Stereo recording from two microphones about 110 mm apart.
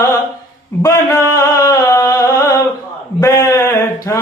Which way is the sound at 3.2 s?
30° left (ahead or behind).